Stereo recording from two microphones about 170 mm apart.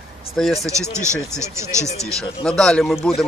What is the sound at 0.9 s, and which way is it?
Speech, 15° right (ahead or behind).